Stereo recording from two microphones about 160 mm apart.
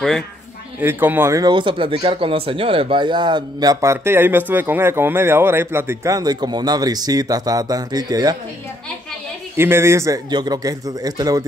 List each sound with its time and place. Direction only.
0.7 s speech: 15° right (ahead or behind)
9.6 s speech: 15° right (ahead or behind)